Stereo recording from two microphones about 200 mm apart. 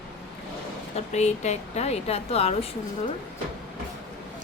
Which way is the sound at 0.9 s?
35° left (ahead or behind).